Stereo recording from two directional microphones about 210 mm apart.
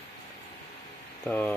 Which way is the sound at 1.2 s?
5° left (ahead or behind).